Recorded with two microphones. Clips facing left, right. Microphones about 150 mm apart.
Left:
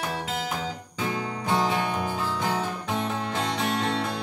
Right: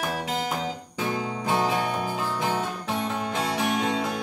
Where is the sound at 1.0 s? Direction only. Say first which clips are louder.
Right 1 dB; 10° right (ahead or behind).